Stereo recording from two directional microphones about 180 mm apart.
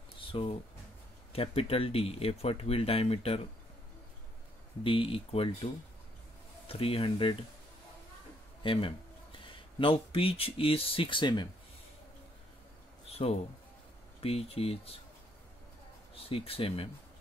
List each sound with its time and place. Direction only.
0.3 s speech: 30° left (ahead or behind)
4.8 s speech: 30° left (ahead or behind)
6.7 s speech: 30° left (ahead or behind)
8.6 s speech: 30° left (ahead or behind)
13.1 s a man's voice: 35° left (ahead or behind)
16.3 s speech: 30° left (ahead or behind)